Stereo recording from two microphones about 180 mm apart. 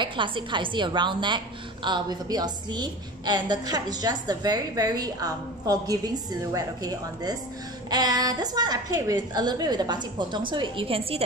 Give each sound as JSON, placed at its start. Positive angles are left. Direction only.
{"t": 0.0, "sound": "a woman's voice", "side_deg": -25}